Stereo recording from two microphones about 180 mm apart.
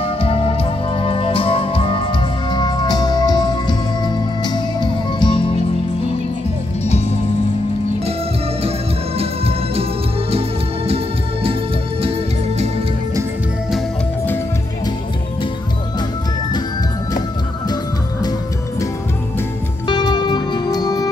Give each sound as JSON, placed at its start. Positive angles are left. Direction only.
{"t": 0.0, "sound": "music", "side_deg": 30}
{"t": 9.2, "sound": "music", "side_deg": -35}
{"t": 19.9, "sound": "music", "side_deg": 25}